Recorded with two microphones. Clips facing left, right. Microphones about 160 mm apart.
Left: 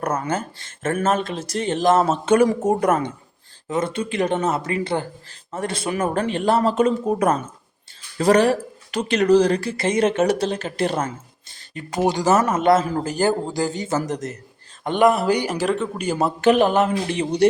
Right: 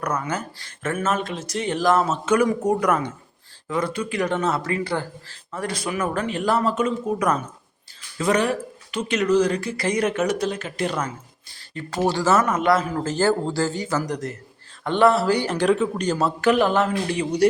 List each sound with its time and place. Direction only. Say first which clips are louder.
0.3 s a man's voice: left 3 dB; 25° left (ahead or behind)
11.7 s a man's voice: left 2 dB; 15° left (ahead or behind)
13.1 s a man's voice: even; 15° left (ahead or behind)
15.5 s speech: right 2 dB; centre (ahead or behind)
16.1 s a man's voice: left 4 dB; 20° left (ahead or behind)